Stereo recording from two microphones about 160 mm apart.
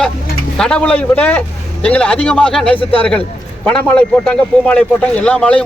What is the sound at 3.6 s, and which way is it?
A man's voice, 5° left (ahead or behind).